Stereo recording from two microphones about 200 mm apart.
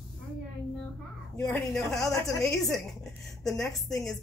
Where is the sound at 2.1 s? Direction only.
15° left (ahead or behind).